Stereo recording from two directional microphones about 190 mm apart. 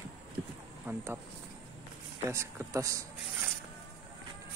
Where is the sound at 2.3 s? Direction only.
15° right (ahead or behind).